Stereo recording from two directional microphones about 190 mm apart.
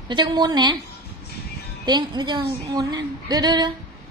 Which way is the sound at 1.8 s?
25° right (ahead or behind).